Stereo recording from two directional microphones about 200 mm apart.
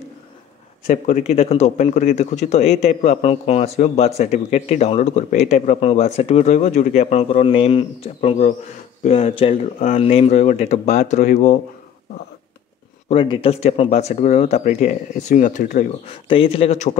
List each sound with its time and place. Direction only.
0.8 s speech: 40° left (ahead or behind)
13.1 s speech: 25° left (ahead or behind)